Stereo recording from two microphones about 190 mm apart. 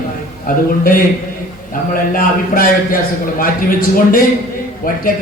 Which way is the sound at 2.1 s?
50° left (ahead or behind).